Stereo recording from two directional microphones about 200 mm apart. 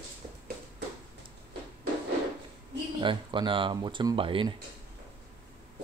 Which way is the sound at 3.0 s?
25° right (ahead or behind).